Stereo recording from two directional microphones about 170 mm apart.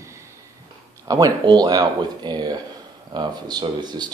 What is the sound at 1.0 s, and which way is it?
Speech, 20° right (ahead or behind).